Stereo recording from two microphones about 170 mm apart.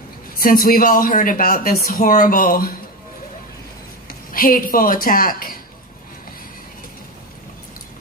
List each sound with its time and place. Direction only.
0.4 s speech: 55° left (ahead or behind)
4.3 s speech: 55° left (ahead or behind)